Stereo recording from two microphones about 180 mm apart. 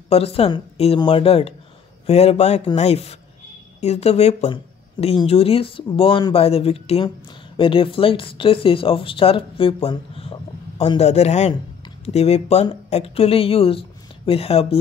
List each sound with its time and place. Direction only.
0.1 s speech: 35° left (ahead or behind)